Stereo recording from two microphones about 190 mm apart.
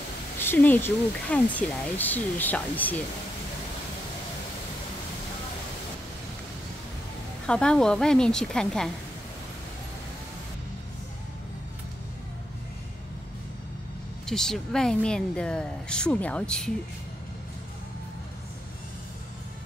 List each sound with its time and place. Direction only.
0.4 s speech: 10° left (ahead or behind)
7.4 s a woman's voice: 5° left (ahead or behind)
14.2 s a woman's voice: 5° left (ahead or behind)